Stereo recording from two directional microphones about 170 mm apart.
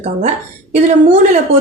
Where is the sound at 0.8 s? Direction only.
40° right (ahead or behind).